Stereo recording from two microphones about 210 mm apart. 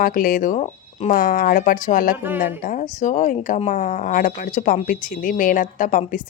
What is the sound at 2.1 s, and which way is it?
Speech, 10° right (ahead or behind).